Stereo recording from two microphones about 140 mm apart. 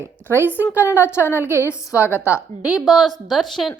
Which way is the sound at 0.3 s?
15° right (ahead or behind).